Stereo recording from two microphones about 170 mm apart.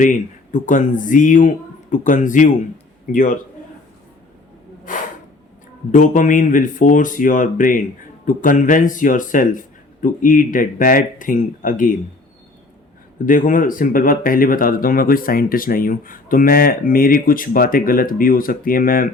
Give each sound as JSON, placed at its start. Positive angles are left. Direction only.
{"t": 0.0, "sound": "speech", "side_deg": 50}
{"t": 4.9, "sound": "a sound", "side_deg": 50}
{"t": 5.9, "sound": "speech", "side_deg": 50}
{"t": 13.2, "sound": "speech", "side_deg": 50}